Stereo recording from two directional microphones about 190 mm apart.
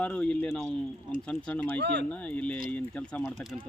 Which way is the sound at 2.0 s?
5° left (ahead or behind).